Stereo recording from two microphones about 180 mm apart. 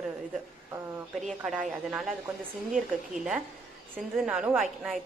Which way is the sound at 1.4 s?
Centre (ahead or behind).